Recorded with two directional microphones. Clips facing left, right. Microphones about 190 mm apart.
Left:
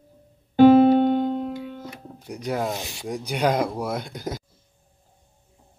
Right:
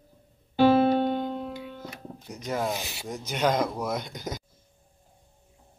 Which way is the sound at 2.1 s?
10° left (ahead or behind).